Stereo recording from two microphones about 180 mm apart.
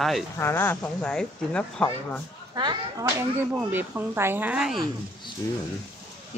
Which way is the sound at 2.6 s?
25° right (ahead or behind).